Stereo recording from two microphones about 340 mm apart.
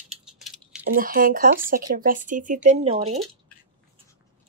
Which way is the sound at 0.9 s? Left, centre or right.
Right.